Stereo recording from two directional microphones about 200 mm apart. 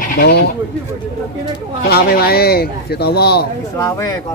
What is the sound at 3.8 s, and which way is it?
Speech, 15° left (ahead or behind).